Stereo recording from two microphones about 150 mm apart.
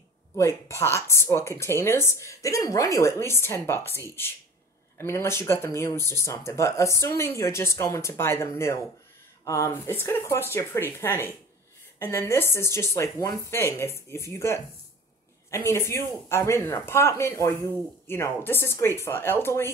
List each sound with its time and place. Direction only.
0.4 s speech: 20° left (ahead or behind)